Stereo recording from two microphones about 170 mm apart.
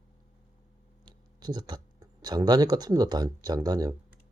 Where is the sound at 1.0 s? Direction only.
25° right (ahead or behind).